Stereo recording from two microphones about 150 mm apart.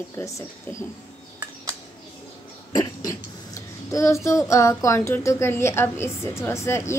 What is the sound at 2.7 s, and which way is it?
A child's voice, 25° left (ahead or behind).